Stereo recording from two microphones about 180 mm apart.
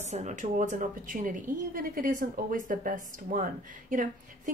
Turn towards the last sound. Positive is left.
turn(degrees=-50)  # may be behind; listen again after turning